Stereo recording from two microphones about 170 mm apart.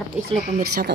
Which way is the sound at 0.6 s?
65° right (ahead or behind).